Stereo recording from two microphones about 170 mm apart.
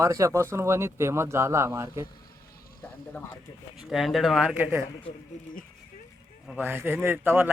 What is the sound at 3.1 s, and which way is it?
Speech, 10° left (ahead or behind).